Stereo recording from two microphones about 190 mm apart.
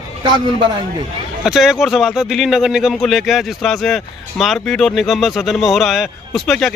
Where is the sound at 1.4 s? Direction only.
Centre (ahead or behind).